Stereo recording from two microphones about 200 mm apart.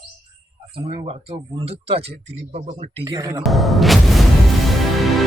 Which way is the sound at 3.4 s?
Centre (ahead or behind).